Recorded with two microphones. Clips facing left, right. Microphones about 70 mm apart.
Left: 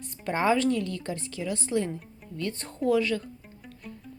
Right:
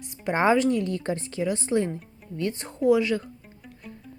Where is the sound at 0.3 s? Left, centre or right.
Right.